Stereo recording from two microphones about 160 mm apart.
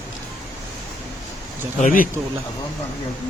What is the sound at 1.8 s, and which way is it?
Speech, 55° left (ahead or behind).